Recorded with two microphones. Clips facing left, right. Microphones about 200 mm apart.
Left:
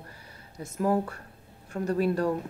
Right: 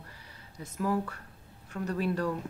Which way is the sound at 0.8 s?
40° left (ahead or behind).